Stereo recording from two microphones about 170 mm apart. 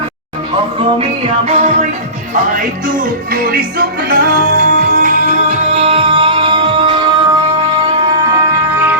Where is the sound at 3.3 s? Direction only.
55° right (ahead or behind).